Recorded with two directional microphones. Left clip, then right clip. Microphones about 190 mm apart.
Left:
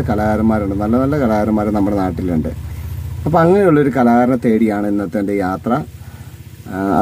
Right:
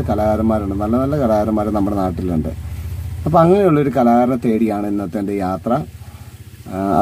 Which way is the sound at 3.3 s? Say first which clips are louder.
Left 1 dB; 10° left (ahead or behind).